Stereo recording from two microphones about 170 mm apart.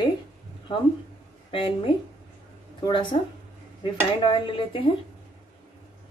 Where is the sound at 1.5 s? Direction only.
30° left (ahead or behind).